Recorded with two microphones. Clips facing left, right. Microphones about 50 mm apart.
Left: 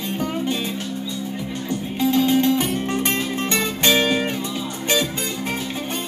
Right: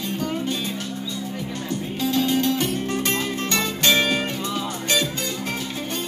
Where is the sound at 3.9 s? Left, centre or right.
Centre.